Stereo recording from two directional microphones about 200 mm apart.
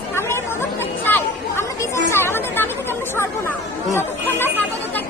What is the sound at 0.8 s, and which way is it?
Chatter, 10° left (ahead or behind).